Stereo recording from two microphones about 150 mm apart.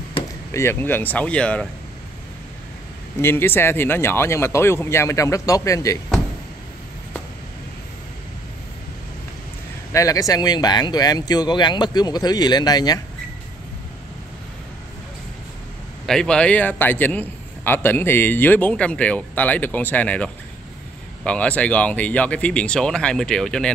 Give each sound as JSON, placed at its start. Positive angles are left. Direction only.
{"t": 0.5, "sound": "a man's voice", "side_deg": 20}
{"t": 3.2, "sound": "a man's voice", "side_deg": 15}
{"t": 9.9, "sound": "speech", "side_deg": 25}
{"t": 16.1, "sound": "a man's voice", "side_deg": 5}